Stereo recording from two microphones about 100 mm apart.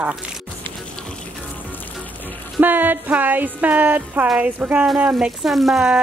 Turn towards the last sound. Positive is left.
turn(degrees=-5)  # may be behind; listen again after turning